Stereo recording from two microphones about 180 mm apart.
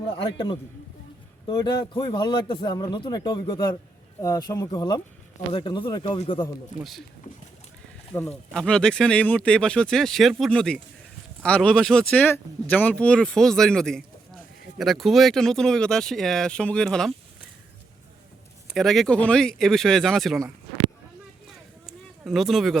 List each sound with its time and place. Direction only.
0.2 s speech: 25° left (ahead or behind)
6.7 s speech: centre (ahead or behind)
8.1 s speech: 10° left (ahead or behind)
18.7 s speech: centre (ahead or behind)
21.8 s a sound: centre (ahead or behind)